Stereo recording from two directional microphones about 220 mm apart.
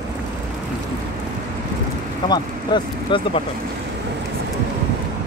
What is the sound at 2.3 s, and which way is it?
Speech, 20° left (ahead or behind).